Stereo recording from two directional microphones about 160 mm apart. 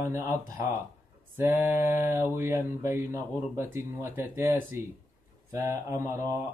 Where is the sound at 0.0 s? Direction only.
15° right (ahead or behind).